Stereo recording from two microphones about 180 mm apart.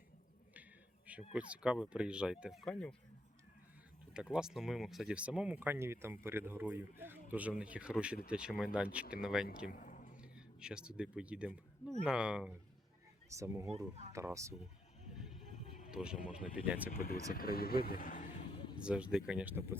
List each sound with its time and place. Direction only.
1.3 s speech: 5° right (ahead or behind)
4.1 s speech: 5° right (ahead or behind)
9.7 s a sound: 45° left (ahead or behind)
10.2 s speech: 5° right (ahead or behind)
13.3 s speech: 15° right (ahead or behind)
15.4 s vehicle: 40° left (ahead or behind)
15.9 s speech: 5° right (ahead or behind)
17.3 s speech: 55° left (ahead or behind)
18.9 s speech: 5° right (ahead or behind)